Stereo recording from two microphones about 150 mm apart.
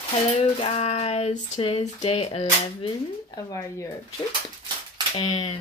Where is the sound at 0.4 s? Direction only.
40° left (ahead or behind).